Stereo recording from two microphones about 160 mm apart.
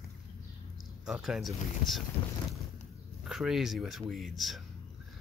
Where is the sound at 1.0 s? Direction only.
5° right (ahead or behind).